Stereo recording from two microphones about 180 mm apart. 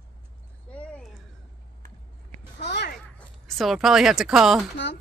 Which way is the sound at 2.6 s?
70° left (ahead or behind).